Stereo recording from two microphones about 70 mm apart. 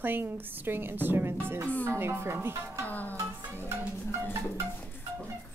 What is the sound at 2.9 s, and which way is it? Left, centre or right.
Speech, left.